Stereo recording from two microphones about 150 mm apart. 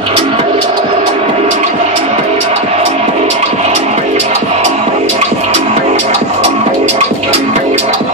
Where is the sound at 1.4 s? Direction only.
55° right (ahead or behind).